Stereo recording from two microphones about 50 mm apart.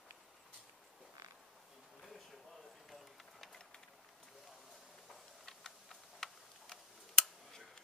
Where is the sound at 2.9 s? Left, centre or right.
Centre.